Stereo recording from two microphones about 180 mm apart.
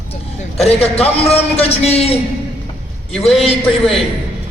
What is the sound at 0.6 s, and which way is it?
A man's voice, 35° left (ahead or behind).